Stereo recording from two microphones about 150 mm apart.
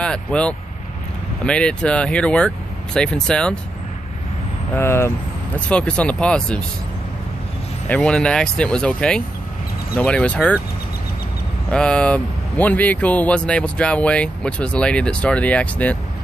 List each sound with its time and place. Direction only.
0.0 s speech: 5° left (ahead or behind)
4.7 s speech: 15° left (ahead or behind)
7.9 s speech: 5° left (ahead or behind)
11.7 s speech: 5° left (ahead or behind)